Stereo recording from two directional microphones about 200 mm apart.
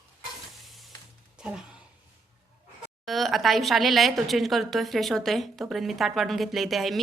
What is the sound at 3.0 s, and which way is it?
A woman's voice, centre (ahead or behind).